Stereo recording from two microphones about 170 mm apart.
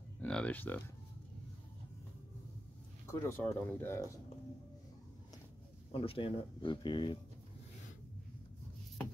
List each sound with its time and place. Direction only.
0.2 s music: 10° left (ahead or behind)
3.1 s speech: 15° left (ahead or behind)
5.9 s speech: 35° left (ahead or behind)